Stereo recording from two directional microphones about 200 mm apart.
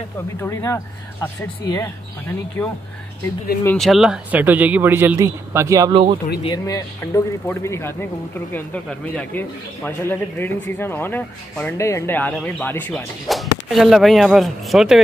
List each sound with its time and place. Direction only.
0.4 s speech: 15° left (ahead or behind)
3.6 s a man's voice: centre (ahead or behind); by 6.1 s 25° right (ahead or behind)
6.4 s speech: 20° left (ahead or behind); by 15.0 s centre (ahead or behind)